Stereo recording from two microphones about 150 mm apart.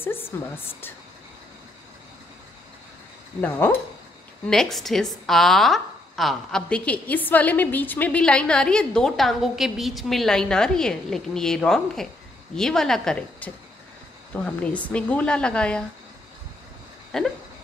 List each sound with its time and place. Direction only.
0.0 s a woman's voice: 15° left (ahead or behind)
3.3 s a woman's voice: 15° left (ahead or behind)
4.5 s a woman's voice: 5° left (ahead or behind)
17.1 s a woman's voice: 5° left (ahead or behind)